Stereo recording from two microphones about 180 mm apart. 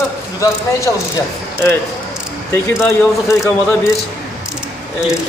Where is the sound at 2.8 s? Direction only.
15° left (ahead or behind).